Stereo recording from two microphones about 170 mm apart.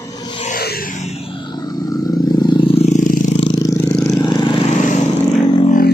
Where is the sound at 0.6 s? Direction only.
60° left (ahead or behind).